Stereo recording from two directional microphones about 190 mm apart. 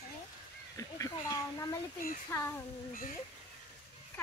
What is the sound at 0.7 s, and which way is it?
Speech, 15° left (ahead or behind).